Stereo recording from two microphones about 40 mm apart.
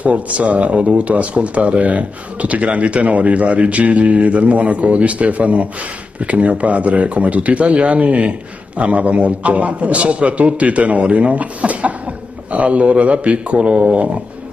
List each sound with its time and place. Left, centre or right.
0.0 s speech: right